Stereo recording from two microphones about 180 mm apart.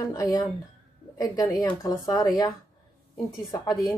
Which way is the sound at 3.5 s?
20° left (ahead or behind).